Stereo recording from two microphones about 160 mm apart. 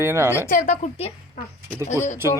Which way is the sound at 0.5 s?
50° left (ahead or behind).